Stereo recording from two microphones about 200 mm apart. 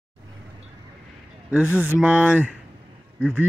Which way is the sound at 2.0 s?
5° right (ahead or behind).